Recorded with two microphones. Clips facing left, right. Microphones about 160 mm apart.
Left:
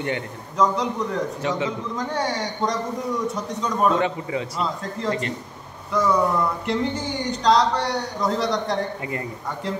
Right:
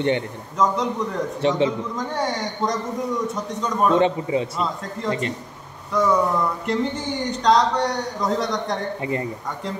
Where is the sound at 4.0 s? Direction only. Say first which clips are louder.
Right 5 dB; 25° right (ahead or behind).